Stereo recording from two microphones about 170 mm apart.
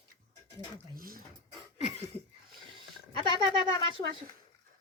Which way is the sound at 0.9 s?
60° right (ahead or behind).